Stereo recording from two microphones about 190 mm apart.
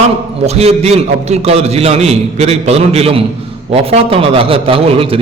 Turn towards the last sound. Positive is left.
turn(degrees=-30)  # may be behind; listen again after turning